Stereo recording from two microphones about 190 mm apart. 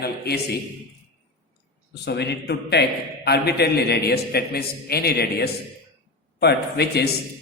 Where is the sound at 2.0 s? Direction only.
60° left (ahead or behind).